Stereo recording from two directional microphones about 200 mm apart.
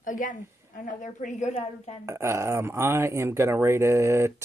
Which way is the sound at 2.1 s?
15° right (ahead or behind).